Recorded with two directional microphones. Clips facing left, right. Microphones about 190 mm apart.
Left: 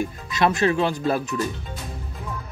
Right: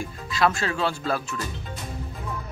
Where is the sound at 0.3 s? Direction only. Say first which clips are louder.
Left 3 dB; 20° left (ahead or behind).